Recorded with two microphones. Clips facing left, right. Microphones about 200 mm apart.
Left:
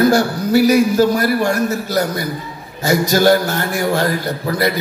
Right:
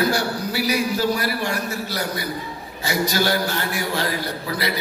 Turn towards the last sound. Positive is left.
turn(degrees=50)  # may be behind; listen again after turning